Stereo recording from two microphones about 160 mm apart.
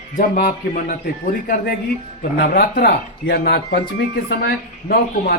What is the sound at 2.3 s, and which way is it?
Speech, 75° left (ahead or behind).